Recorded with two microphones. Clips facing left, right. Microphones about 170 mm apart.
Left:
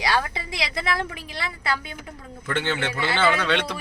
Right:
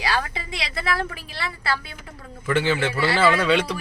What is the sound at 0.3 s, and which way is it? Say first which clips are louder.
A woman's voice: left 1 dB; 20° left (ahead or behind).